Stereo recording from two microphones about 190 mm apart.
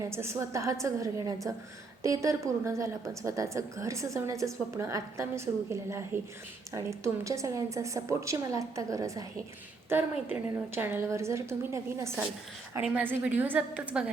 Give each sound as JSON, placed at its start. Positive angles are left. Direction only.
{"t": 0.0, "sound": "a woman's voice", "side_deg": -15}